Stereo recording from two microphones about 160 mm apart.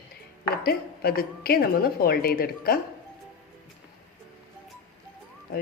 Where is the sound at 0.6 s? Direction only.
75° left (ahead or behind).